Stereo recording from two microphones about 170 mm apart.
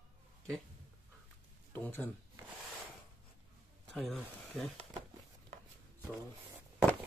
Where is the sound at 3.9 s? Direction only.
5° left (ahead or behind).